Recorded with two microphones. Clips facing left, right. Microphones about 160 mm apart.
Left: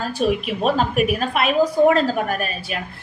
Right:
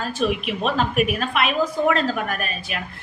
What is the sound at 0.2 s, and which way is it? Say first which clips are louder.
A woman's voice: left 3 dB; 35° left (ahead or behind).